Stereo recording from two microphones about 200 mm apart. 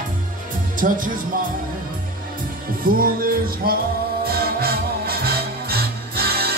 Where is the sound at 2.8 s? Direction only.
45° right (ahead or behind).